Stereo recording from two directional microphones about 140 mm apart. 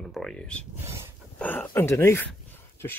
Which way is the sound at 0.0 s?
5° left (ahead or behind).